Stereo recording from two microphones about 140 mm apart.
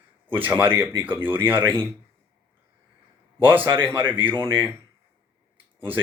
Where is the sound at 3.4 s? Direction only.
15° right (ahead or behind).